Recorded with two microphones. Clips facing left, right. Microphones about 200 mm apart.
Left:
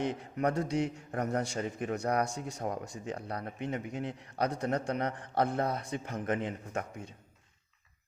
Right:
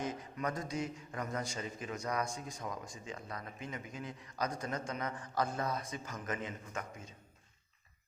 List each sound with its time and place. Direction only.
0.0 s a man's voice: 65° left (ahead or behind)